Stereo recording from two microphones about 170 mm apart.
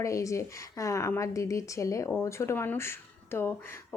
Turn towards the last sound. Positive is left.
turn(degrees=15)  # may be behind; listen again after turning